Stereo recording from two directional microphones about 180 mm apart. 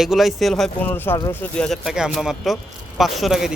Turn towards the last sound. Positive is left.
turn(degrees=0)  # may be behind; listen again after turning